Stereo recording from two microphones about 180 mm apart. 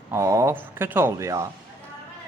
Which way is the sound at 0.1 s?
15° right (ahead or behind).